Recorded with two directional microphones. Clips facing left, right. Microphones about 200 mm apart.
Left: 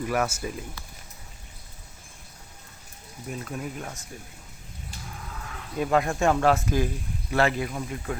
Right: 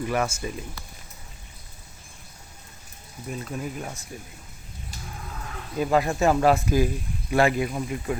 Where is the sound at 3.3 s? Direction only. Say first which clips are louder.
Right 2 dB; centre (ahead or behind).